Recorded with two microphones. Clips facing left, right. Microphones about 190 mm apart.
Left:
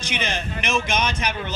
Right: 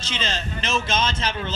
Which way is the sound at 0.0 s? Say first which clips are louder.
Left 2 dB; 15° left (ahead or behind).